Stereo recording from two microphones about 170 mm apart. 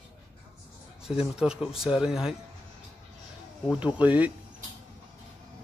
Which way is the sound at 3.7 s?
10° right (ahead or behind).